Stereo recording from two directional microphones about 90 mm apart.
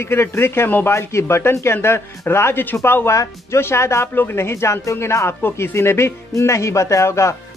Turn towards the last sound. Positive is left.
turn(degrees=30)  # may be behind; listen again after turning